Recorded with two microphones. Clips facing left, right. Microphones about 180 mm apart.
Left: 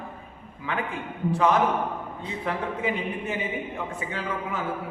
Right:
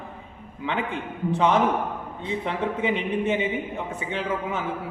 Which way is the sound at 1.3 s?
25° right (ahead or behind).